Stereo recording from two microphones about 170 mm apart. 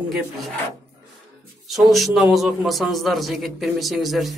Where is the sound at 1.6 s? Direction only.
Centre (ahead or behind).